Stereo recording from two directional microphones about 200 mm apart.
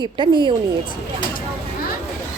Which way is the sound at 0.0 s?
25° right (ahead or behind).